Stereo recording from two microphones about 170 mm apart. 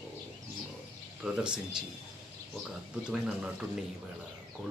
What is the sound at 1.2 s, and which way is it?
Speech, 5° right (ahead or behind).